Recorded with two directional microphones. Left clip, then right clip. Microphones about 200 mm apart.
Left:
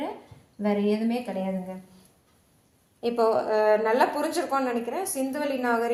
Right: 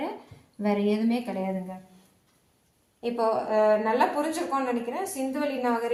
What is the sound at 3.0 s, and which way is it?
A woman's voice, 45° left (ahead or behind).